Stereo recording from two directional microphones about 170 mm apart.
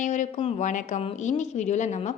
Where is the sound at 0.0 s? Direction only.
45° left (ahead or behind).